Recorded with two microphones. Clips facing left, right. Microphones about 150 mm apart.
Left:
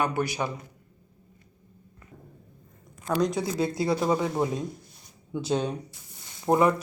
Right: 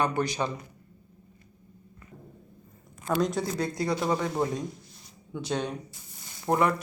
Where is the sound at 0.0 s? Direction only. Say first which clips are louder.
Even; 10° left (ahead or behind).